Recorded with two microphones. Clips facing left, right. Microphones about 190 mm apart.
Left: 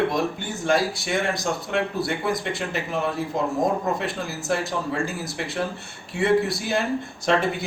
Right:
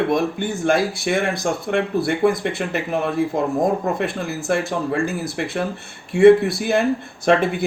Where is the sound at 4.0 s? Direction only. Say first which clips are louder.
Right 5 dB; 55° right (ahead or behind).